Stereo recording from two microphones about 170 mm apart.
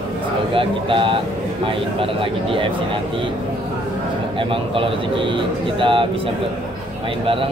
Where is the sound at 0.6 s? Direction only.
30° right (ahead or behind).